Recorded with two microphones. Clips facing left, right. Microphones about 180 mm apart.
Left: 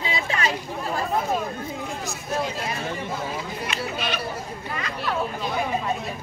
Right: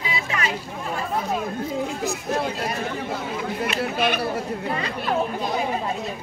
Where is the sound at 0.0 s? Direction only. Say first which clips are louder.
Left 1 dB; 30° left (ahead or behind).